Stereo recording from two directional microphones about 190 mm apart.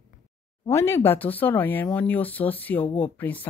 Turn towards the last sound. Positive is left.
turn(degrees=10)  # may be behind; listen again after turning